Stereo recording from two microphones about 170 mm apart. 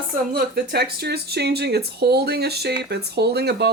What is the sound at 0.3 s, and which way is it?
Speech, 70° right (ahead or behind).